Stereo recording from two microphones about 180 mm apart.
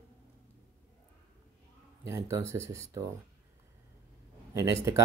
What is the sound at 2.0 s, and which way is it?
Speech, 15° right (ahead or behind).